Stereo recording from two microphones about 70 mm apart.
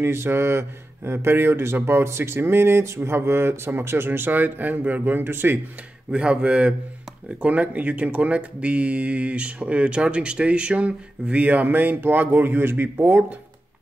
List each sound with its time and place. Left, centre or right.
0.0 s speech: right
6.1 s speech: centre; by 13.2 s right